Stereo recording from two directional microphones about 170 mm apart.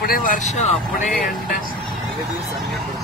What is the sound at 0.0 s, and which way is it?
Speech, 55° left (ahead or behind).